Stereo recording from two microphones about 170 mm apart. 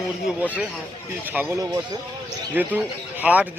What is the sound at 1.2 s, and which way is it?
Speech, 10° right (ahead or behind).